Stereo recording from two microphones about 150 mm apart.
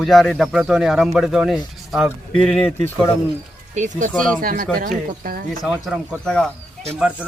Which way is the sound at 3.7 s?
55° right (ahead or behind).